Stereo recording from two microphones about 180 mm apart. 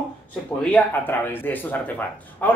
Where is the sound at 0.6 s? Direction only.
5° left (ahead or behind).